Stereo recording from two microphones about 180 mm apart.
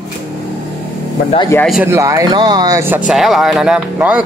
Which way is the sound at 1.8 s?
15° right (ahead or behind).